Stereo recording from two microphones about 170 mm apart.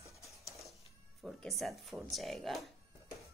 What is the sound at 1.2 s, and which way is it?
Speech, centre (ahead or behind).